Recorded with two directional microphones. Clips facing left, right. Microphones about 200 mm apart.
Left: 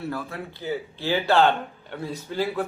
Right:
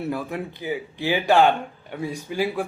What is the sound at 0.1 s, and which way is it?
Speech, 15° right (ahead or behind).